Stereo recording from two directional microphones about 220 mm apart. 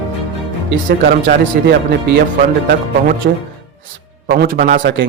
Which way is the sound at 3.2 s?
45° right (ahead or behind).